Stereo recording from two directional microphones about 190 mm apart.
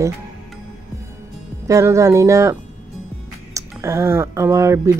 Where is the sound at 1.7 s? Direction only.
15° right (ahead or behind).